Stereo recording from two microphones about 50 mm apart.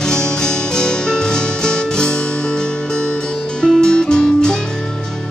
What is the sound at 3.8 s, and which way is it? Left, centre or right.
Music, centre.